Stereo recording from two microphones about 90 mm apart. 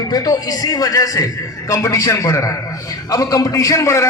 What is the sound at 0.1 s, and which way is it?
A man's voice, 45° left (ahead or behind).